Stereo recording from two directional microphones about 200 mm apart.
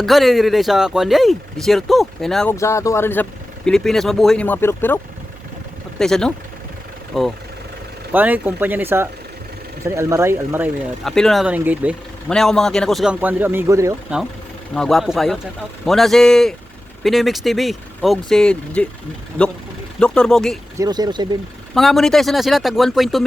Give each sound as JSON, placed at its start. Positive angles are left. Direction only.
{"t": 0.0, "sound": "speech", "side_deg": 0}
{"t": 2.6, "sound": "speech", "side_deg": 15}
{"t": 6.0, "sound": "speech", "side_deg": 0}
{"t": 11.0, "sound": "speech", "side_deg": 0}
{"t": 12.3, "sound": "speech", "side_deg": 0}
{"t": 14.7, "sound": "speech", "side_deg": 0}
{"t": 20.7, "sound": "speech", "side_deg": -20}
{"t": 21.8, "sound": "speech", "side_deg": 0}